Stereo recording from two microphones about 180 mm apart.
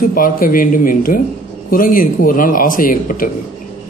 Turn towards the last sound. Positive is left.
turn(degrees=50)  # may be behind; listen again after turning